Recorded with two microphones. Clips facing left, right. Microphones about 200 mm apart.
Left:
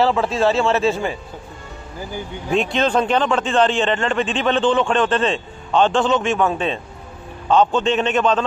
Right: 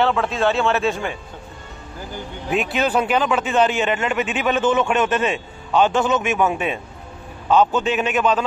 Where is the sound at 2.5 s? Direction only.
5° right (ahead or behind).